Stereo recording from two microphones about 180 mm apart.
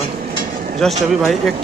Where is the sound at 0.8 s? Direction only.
Centre (ahead or behind).